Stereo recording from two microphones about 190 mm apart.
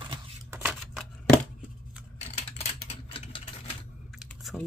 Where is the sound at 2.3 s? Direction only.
35° left (ahead or behind).